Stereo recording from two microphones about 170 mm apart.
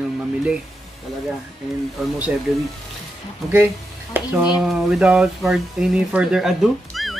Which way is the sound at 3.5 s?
10° right (ahead or behind).